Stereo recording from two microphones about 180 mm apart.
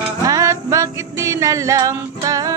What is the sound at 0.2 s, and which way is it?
Music, 20° right (ahead or behind).